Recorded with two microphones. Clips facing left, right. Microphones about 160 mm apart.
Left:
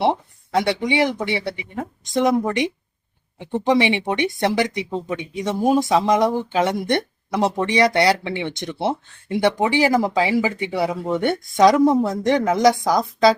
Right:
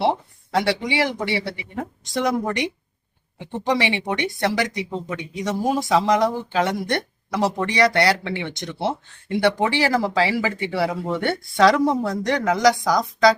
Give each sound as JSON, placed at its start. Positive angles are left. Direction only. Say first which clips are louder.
{"t": 0.5, "sound": "speech", "louder": "left 2 dB", "side_deg": 20}